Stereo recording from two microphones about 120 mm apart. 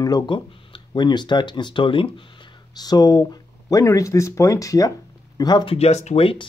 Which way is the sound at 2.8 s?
35° left (ahead or behind).